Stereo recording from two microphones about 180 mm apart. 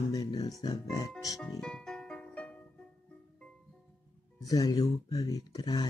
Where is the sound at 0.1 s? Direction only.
20° left (ahead or behind).